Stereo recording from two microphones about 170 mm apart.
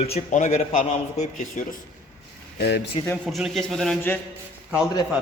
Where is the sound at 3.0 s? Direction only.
35° left (ahead or behind).